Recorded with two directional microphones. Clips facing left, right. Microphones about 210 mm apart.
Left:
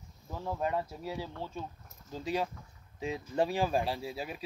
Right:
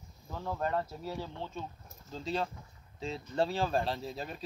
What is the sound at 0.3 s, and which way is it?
Speech, 10° left (ahead or behind).